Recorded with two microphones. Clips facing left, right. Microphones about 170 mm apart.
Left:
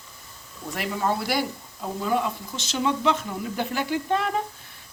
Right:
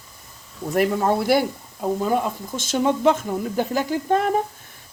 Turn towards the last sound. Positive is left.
turn(degrees=-45)  # may be behind; listen again after turning